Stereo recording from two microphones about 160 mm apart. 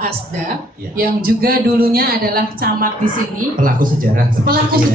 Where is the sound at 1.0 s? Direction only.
65° right (ahead or behind).